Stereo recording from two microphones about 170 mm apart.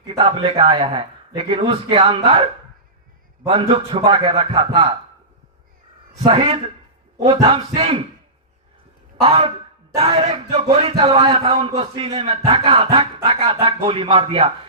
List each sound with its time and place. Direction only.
0.0 s speech: 35° right (ahead or behind)
3.4 s speech: 35° right (ahead or behind)
6.2 s speech: 35° right (ahead or behind)
9.2 s speech: 35° right (ahead or behind)